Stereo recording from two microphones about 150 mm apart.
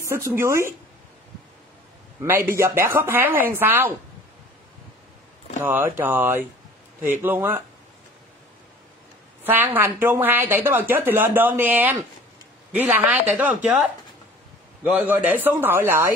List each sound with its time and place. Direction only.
0.0 s a woman's voice: 15° right (ahead or behind)
2.2 s a woman's voice: 15° right (ahead or behind)
5.6 s a woman's voice: 15° right (ahead or behind)
9.4 s a woman's voice: 15° right (ahead or behind)
14.8 s a woman's voice: 10° right (ahead or behind)